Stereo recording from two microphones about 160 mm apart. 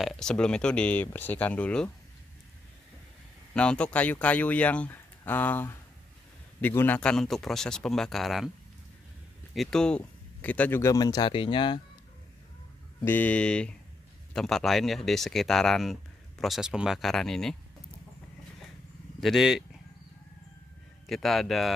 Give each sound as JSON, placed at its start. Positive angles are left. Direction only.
{"t": 0.0, "sound": "speech", "side_deg": 5}
{"t": 3.5, "sound": "speech", "side_deg": 5}
{"t": 9.5, "sound": "speech", "side_deg": 0}
{"t": 13.0, "sound": "speech", "side_deg": 10}
{"t": 19.1, "sound": "speech", "side_deg": 0}
{"t": 21.1, "sound": "speech", "side_deg": 0}